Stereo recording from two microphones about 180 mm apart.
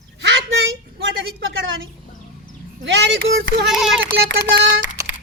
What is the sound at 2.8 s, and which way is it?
Speech, 80° right.